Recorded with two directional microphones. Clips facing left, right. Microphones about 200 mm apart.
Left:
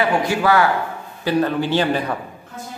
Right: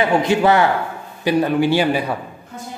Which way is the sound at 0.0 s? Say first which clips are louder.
Right 3 dB; 20° right (ahead or behind).